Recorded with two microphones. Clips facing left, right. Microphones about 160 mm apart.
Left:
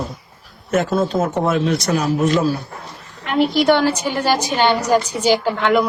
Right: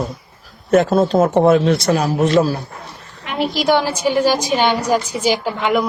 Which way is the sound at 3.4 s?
10° right (ahead or behind).